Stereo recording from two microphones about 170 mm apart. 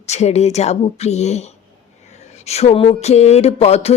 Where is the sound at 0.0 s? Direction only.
40° left (ahead or behind).